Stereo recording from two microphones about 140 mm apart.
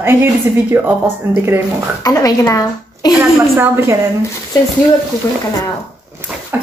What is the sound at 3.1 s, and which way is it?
Speech, 15° right (ahead or behind).